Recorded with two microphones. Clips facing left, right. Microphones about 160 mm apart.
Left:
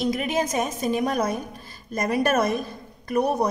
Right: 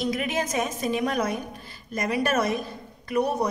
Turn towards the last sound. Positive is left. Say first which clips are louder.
# left 2 dB
turn(degrees=45)  # may be behind; listen again after turning